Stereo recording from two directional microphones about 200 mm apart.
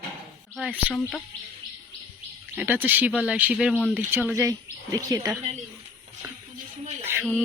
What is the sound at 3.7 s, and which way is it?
Speech, 5° left (ahead or behind).